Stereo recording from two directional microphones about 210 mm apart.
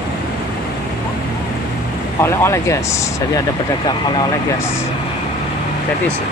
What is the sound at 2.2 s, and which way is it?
Speech, 15° left (ahead or behind).